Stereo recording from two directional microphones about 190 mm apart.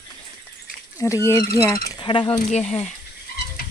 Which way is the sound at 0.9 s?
15° left (ahead or behind).